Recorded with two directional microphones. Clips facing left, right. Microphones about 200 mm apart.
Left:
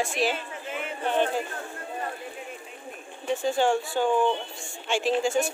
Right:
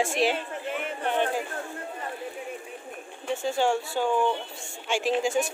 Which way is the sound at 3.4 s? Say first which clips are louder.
Left 1 dB; 5° right (ahead or behind).